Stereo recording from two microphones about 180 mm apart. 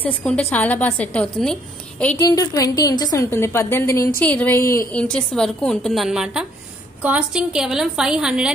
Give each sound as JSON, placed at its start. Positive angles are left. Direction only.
{"t": 0.0, "sound": "a woman's voice", "side_deg": 5}
{"t": 2.2, "sound": "a woman's voice", "side_deg": 20}